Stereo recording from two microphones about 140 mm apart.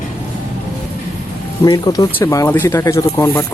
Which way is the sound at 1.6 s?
30° left (ahead or behind).